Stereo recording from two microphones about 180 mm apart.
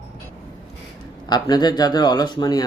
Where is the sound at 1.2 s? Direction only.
25° left (ahead or behind).